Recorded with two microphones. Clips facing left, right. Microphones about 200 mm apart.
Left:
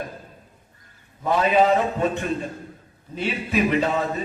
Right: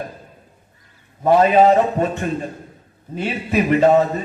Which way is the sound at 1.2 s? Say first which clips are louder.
Right 6 dB; 50° right (ahead or behind).